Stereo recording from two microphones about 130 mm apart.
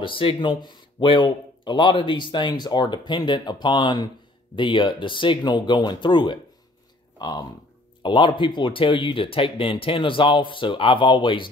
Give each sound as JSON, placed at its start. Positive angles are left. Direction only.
{"t": 0.0, "sound": "speech", "side_deg": 40}